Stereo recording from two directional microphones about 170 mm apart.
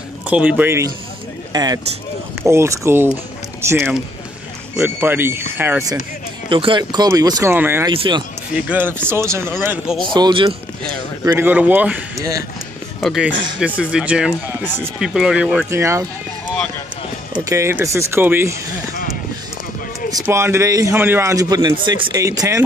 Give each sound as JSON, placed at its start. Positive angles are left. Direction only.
{"t": 0.3, "sound": "speech", "side_deg": -10}
{"t": 6.5, "sound": "a man's voice", "side_deg": -30}
{"t": 7.9, "sound": "a man's voice", "side_deg": -30}
{"t": 8.5, "sound": "speech", "side_deg": -10}
{"t": 10.1, "sound": "a man's voice", "side_deg": -30}
{"t": 11.2, "sound": "a man's voice", "side_deg": -15}
{"t": 17.3, "sound": "speech", "side_deg": -20}
{"t": 20.2, "sound": "a man's voice", "side_deg": -15}